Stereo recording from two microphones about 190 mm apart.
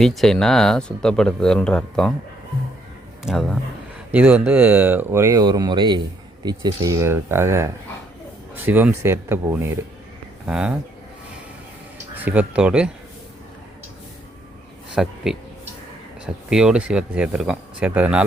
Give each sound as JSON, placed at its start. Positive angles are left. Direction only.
{"t": 0.0, "sound": "speech", "side_deg": 0}
{"t": 3.2, "sound": "speech", "side_deg": 0}
{"t": 12.1, "sound": "speech", "side_deg": -10}
{"t": 14.9, "sound": "a man's voice", "side_deg": 0}